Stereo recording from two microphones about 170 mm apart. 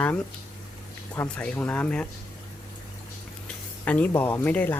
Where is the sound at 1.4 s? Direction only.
10° left (ahead or behind).